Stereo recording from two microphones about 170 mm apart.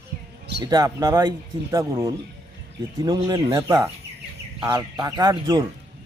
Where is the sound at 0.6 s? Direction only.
25° right (ahead or behind).